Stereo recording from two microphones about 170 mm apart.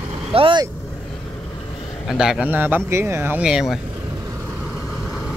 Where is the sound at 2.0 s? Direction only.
5° right (ahead or behind).